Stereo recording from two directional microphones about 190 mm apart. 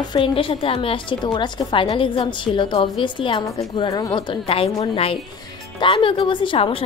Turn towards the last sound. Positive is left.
turn(degrees=30)  # may be behind; listen again after turning